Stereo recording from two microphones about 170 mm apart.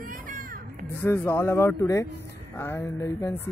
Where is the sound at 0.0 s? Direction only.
55° right (ahead or behind).